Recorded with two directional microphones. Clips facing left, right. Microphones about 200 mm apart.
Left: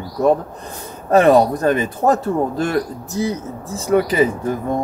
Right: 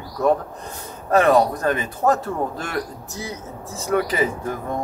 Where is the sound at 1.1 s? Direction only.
30° left (ahead or behind).